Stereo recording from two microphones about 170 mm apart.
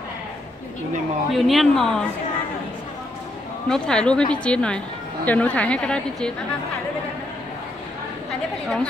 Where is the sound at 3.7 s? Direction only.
5° left (ahead or behind).